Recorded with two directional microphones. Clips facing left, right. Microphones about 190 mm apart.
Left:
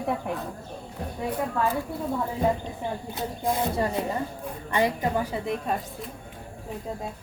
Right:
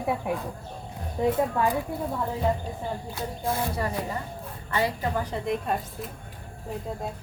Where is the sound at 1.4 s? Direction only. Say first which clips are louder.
Right 4 dB; 25° right (ahead or behind).